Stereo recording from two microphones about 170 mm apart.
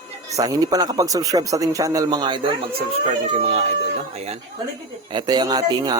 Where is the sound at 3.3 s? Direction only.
40° right (ahead or behind).